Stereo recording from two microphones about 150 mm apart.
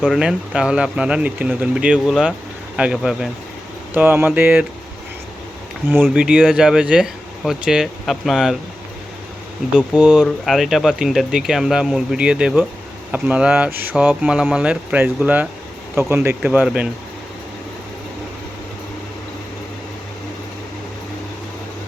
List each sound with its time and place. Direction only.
0.0 s speech: 5° right (ahead or behind)
5.9 s speech: 10° right (ahead or behind)
9.7 s speech: 5° right (ahead or behind)